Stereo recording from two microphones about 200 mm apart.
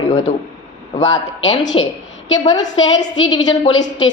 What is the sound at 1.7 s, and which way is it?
A woman's voice, 30° left (ahead or behind).